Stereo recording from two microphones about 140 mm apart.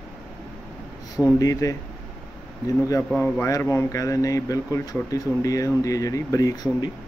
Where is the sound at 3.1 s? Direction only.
15° left (ahead or behind).